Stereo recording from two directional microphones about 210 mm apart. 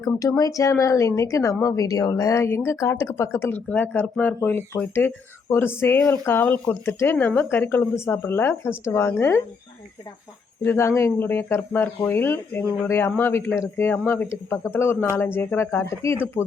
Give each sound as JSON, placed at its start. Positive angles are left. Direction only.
{"t": 0.0, "sound": "speech", "side_deg": 15}
{"t": 10.6, "sound": "speech", "side_deg": 10}